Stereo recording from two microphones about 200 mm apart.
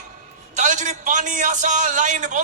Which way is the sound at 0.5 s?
40° right (ahead or behind).